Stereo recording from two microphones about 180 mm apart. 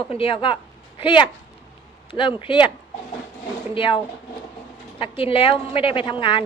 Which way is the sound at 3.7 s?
30° left (ahead or behind).